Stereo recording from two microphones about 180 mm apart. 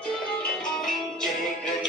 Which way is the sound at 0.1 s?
5° left (ahead or behind).